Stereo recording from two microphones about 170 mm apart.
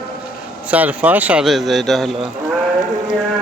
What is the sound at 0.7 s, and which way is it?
A man's voice, 10° right (ahead or behind).